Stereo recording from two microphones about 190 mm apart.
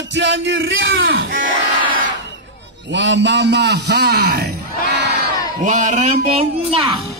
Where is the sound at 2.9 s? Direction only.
65° right (ahead or behind).